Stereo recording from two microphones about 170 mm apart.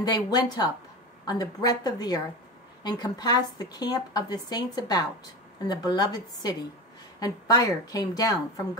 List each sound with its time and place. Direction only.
0.0 s a woman's voice: 25° left (ahead or behind)